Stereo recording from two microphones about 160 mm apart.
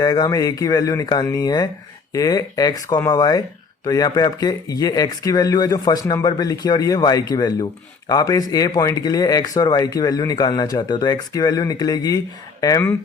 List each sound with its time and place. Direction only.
0.0 s speech: 25° left (ahead or behind)